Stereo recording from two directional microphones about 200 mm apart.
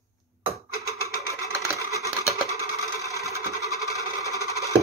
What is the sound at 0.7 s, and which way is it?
Sewing machine, 15° right (ahead or behind).